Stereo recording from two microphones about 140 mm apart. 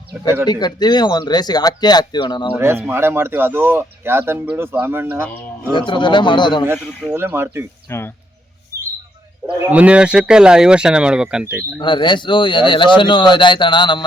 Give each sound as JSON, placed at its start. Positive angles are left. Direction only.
{"t": 0.4, "sound": "speech", "side_deg": 30}
{"t": 2.5, "sound": "speech", "side_deg": -15}
{"t": 5.7, "sound": "speech", "side_deg": 35}
{"t": 7.1, "sound": "speech", "side_deg": -15}
{"t": 7.9, "sound": "speech", "side_deg": 20}
{"t": 9.6, "sound": "speech", "side_deg": -10}
{"t": 11.8, "sound": "speech", "side_deg": 35}